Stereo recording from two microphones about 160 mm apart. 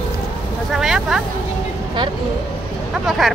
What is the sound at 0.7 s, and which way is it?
Speech, 5° right (ahead or behind).